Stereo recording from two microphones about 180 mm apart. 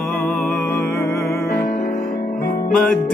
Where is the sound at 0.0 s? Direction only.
Centre (ahead or behind).